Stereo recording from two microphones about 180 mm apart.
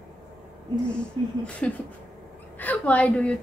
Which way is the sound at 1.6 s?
5° left (ahead or behind).